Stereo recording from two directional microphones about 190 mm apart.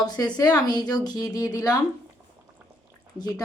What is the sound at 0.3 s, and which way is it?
A woman's voice, 20° left (ahead or behind).